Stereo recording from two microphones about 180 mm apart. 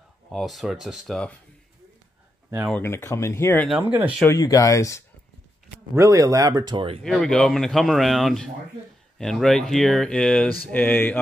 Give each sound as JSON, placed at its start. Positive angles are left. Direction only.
{"t": 0.3, "sound": "speech", "side_deg": 0}
{"t": 2.8, "sound": "speech", "side_deg": 15}
{"t": 3.6, "sound": "speech", "side_deg": -5}
{"t": 4.3, "sound": "speech", "side_deg": 20}
{"t": 5.9, "sound": "speech", "side_deg": -15}
{"t": 7.0, "sound": "speech", "side_deg": 5}